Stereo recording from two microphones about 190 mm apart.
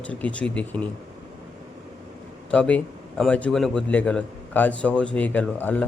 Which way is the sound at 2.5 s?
5° left (ahead or behind).